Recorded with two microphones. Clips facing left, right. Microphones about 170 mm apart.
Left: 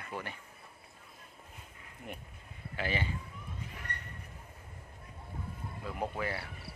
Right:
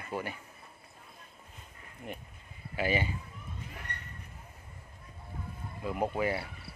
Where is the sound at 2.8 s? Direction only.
10° right (ahead or behind).